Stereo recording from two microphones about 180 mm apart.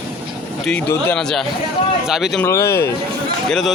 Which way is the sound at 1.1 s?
5° left (ahead or behind).